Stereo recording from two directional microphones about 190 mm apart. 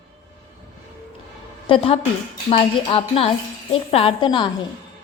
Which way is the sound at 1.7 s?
30° left (ahead or behind).